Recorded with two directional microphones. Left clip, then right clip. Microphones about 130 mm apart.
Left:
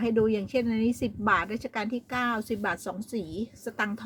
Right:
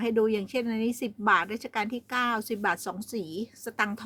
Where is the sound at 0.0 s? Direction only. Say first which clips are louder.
Even; 30° right (ahead or behind).